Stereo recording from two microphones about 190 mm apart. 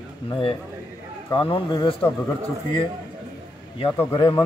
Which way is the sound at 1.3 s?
30° left (ahead or behind).